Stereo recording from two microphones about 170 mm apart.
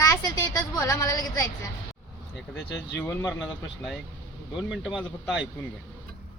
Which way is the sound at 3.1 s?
15° left (ahead or behind).